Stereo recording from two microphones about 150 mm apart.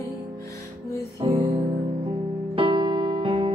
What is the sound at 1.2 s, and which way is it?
Music, 40° right (ahead or behind).